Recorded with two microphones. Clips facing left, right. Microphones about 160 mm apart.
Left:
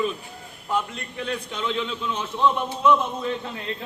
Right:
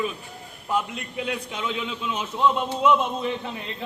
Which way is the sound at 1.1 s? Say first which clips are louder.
Even; 10° right (ahead or behind).